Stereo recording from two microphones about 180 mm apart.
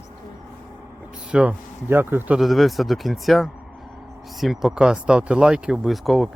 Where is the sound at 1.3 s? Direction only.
5° right (ahead or behind).